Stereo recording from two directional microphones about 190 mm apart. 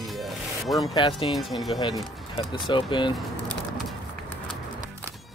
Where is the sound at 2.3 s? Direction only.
25° left (ahead or behind).